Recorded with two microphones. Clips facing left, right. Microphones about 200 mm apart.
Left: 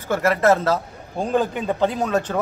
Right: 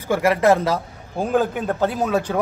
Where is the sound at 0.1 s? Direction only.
15° right (ahead or behind).